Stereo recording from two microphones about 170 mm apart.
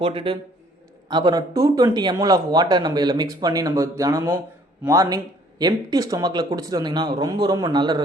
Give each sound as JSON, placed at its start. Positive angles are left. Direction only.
{"t": 0.0, "sound": "a man's voice", "side_deg": -30}